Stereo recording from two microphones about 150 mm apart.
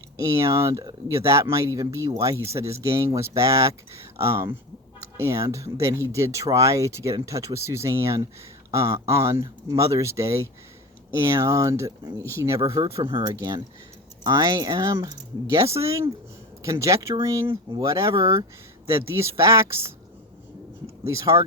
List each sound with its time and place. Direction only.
0.2 s speech: 20° right (ahead or behind)
12.7 s speech: 35° right (ahead or behind)
21.1 s speech: 20° right (ahead or behind)